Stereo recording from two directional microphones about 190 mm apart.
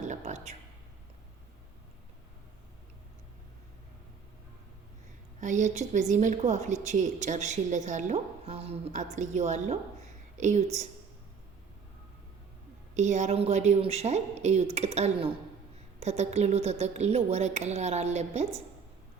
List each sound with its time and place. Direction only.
0.1 s speech: 40° right (ahead or behind)
5.4 s a woman's voice: 40° right (ahead or behind)
12.9 s a woman's voice: 40° right (ahead or behind)